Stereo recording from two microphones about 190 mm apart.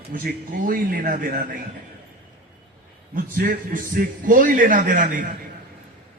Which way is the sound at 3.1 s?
50° right (ahead or behind).